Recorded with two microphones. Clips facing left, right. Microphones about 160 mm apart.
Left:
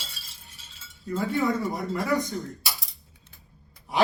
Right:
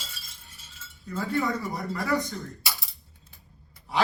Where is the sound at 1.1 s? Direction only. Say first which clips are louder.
Left 2 dB; 20° left (ahead or behind).